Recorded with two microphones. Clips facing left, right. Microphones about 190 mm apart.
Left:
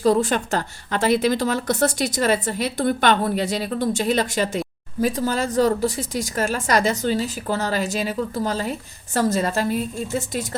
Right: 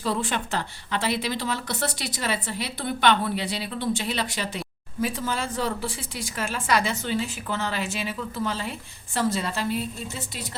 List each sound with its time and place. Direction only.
0.0 s a woman's voice: 40° left (ahead or behind)